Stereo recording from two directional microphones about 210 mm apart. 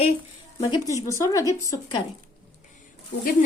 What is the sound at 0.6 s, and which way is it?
Speech, 15° left (ahead or behind).